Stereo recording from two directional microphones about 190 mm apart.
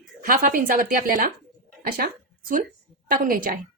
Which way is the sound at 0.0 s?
45° right (ahead or behind).